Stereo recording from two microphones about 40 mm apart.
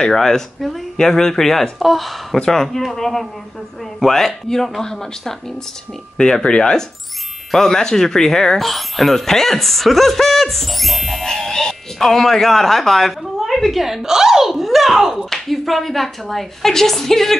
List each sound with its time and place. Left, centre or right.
0.0 s speech: centre
0.9 s speech: centre
2.3 s speech: centre
6.4 s speech: left
7.5 s speech: centre
15.1 s speech: centre
15.4 s speech: centre